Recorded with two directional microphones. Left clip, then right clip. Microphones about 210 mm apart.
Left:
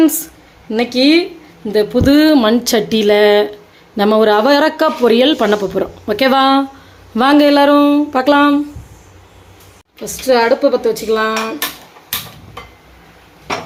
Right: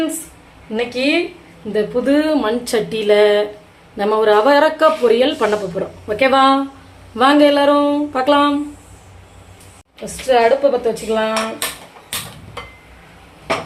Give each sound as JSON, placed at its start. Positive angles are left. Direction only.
{"t": 0.7, "sound": "speech", "side_deg": 55}
{"t": 10.0, "sound": "a woman's voice", "side_deg": 55}